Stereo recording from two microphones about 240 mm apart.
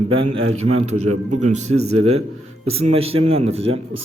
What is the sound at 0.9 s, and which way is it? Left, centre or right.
Speech, right.